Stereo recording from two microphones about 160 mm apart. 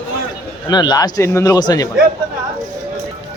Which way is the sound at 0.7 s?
25° left (ahead or behind).